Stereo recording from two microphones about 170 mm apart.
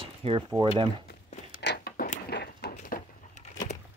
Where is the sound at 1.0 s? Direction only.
55° left (ahead or behind).